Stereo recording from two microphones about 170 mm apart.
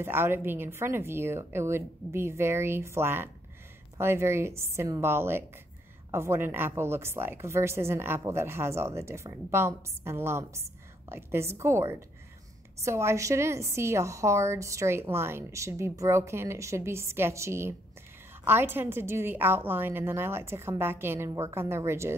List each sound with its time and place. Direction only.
0.0 s a woman's voice: 15° right (ahead or behind)